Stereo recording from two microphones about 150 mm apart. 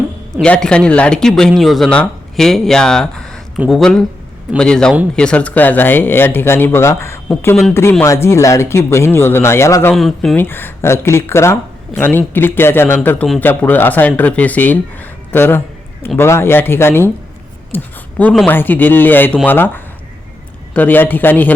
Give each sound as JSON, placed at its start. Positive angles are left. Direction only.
{"t": 0.4, "sound": "speech", "side_deg": 5}
{"t": 9.9, "sound": "speech", "side_deg": 0}
{"t": 10.3, "sound": "speech", "side_deg": 15}